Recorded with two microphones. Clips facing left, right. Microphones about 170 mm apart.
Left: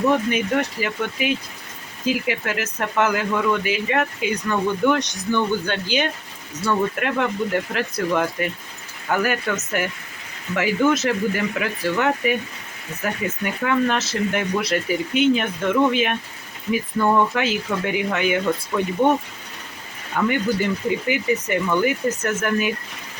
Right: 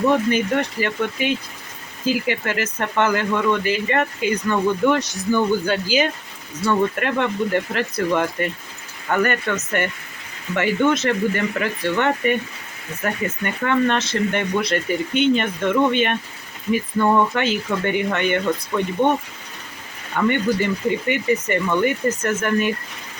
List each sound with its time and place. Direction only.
0.1 s speech: centre (ahead or behind)
20.1 s speech: centre (ahead or behind)